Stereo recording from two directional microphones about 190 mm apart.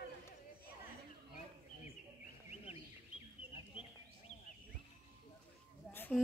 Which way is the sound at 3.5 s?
30° left (ahead or behind).